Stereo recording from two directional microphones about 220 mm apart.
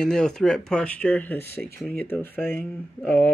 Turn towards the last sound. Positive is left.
turn(degrees=10)  # may be behind; listen again after turning